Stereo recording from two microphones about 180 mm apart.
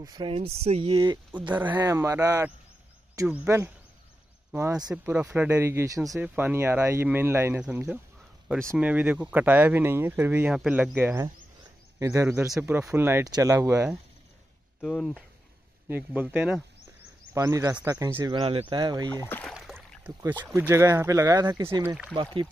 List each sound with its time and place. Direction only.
0.0 s speech: 25° right (ahead or behind)
0.9 s speech: 20° right (ahead or behind)
1.5 s speech: 10° right (ahead or behind)
4.9 s speech: 5° right (ahead or behind)
14.8 s speech: 5° left (ahead or behind)
15.9 s speech: 10° right (ahead or behind)
17.3 s speech: 20° right (ahead or behind)
18.8 s speech: 20° right (ahead or behind)
19.1 s speech: 10° left (ahead or behind)
19.5 s a sound: 5° right (ahead or behind)
20.5 s speech: 15° right (ahead or behind)
22.1 s speech: 30° right (ahead or behind)